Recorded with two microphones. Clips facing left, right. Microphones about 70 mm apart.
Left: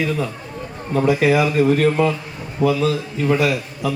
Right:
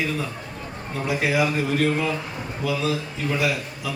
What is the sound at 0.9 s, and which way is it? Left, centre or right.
A man's voice, left.